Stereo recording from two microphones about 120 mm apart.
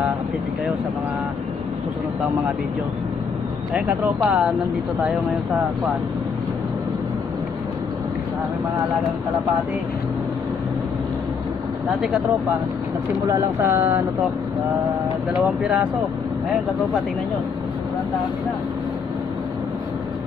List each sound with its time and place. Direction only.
3.7 s speech: 10° right (ahead or behind)
13.3 s speech: 20° right (ahead or behind)
15.6 s speech: 10° right (ahead or behind)